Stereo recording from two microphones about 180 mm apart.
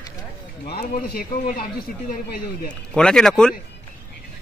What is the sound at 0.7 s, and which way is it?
Speech, 60° left (ahead or behind).